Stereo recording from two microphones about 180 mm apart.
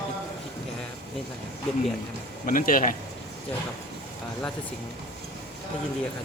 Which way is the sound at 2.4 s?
50° left (ahead or behind).